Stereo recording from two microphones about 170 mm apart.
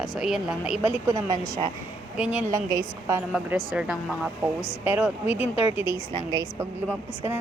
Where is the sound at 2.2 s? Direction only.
10° right (ahead or behind).